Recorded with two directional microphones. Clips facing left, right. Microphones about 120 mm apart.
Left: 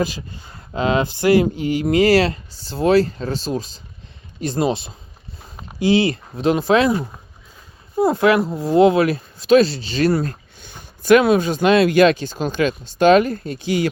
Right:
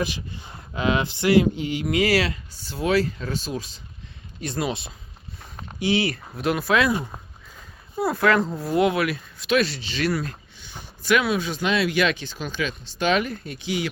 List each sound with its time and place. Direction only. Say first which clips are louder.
0.7 s speech: left 4 dB; 30° left (ahead or behind)
7.9 s speech: left 5 dB; 25° left (ahead or behind)
8.7 s speech: left 8 dB; 30° left (ahead or behind)
11.0 s speech: left 9 dB; 50° left (ahead or behind)